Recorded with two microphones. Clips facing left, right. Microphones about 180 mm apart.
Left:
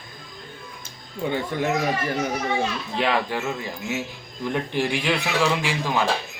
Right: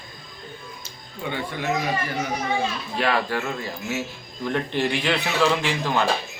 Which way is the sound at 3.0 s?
20° left (ahead or behind).